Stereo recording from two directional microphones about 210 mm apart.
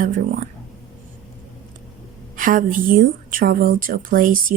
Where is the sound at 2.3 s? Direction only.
40° right (ahead or behind).